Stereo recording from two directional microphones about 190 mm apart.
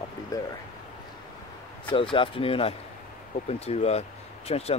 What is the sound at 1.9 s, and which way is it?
Speech, 25° left (ahead or behind).